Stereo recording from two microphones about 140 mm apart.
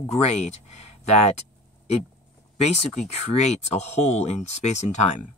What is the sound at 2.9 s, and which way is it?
Speech, 50° left (ahead or behind).